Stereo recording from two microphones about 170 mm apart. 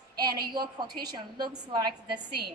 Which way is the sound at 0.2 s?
25° right (ahead or behind).